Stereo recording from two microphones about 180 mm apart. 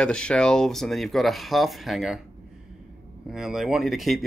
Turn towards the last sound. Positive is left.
turn(degrees=0)  # may be behind; listen again after turning